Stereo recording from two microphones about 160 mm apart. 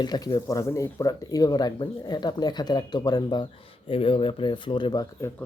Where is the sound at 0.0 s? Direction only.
25° left (ahead or behind).